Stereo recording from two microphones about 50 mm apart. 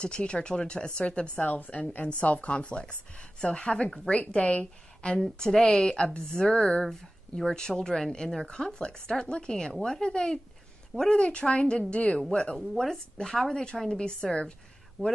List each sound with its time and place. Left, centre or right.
0.0 s chopping: left
1.3 s chopping: left
2.9 s speech: centre
4.1 s chopping: left
5.4 s speech: centre
11.1 s chopping: centre
12.5 s speech: centre